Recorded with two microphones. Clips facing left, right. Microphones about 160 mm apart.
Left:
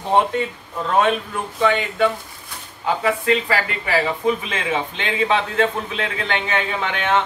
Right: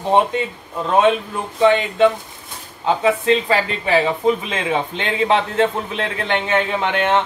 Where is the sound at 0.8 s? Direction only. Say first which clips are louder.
Right 3 dB; 20° right (ahead or behind).